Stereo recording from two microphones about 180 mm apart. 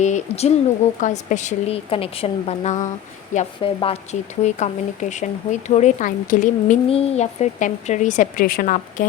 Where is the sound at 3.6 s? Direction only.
30° left (ahead or behind).